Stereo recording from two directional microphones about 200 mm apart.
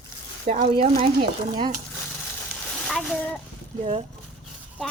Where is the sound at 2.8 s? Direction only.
5° left (ahead or behind).